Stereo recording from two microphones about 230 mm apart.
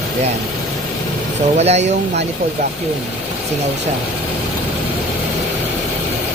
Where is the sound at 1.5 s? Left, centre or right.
Right.